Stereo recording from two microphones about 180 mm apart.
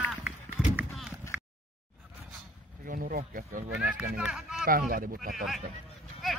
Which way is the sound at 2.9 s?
55° right (ahead or behind).